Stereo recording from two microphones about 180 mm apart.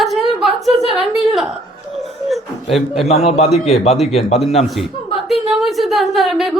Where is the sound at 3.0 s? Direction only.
35° left (ahead or behind).